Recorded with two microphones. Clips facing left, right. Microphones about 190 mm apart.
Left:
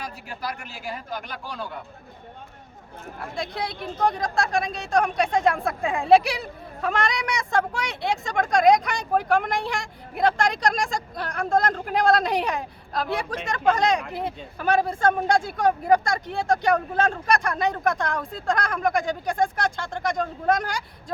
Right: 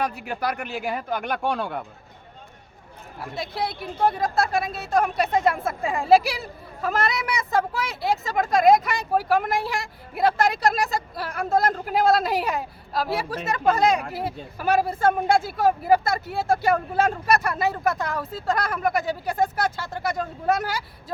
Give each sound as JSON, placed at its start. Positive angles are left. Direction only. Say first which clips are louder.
{"t": 0.0, "sound": "speech", "louder": "right 7 dB", "side_deg": -60}
{"t": 3.3, "sound": "a woman's voice", "louder": "right 2 dB", "side_deg": -5}